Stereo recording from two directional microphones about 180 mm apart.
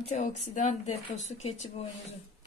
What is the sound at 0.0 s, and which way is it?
Speech, 40° left (ahead or behind).